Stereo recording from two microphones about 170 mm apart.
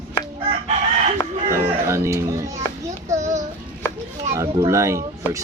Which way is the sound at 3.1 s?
45° right (ahead or behind).